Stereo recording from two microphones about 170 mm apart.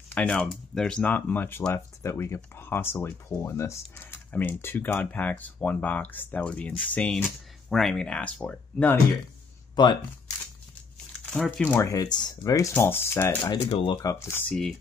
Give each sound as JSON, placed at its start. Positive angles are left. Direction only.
{"t": 0.1, "sound": "speech", "side_deg": 5}
{"t": 9.8, "sound": "speech", "side_deg": 25}
{"t": 11.2, "sound": "speech", "side_deg": 5}
{"t": 13.5, "sound": "speech", "side_deg": 30}
{"t": 14.0, "sound": "speech", "side_deg": 15}
{"t": 14.5, "sound": "speech", "side_deg": 0}